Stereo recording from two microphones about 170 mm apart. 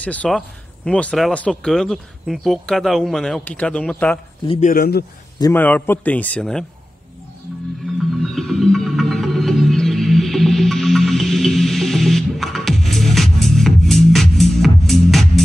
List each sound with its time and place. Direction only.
0.0 s a man's voice: 5° left (ahead or behind)
4.5 s a man's voice: 45° left (ahead or behind); by 5.0 s 65° left (ahead or behind)
5.4 s a man's voice: 10° left (ahead or behind)
7.8 s music: centre (ahead or behind)